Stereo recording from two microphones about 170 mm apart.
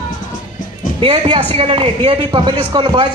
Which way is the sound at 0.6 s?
50° left (ahead or behind).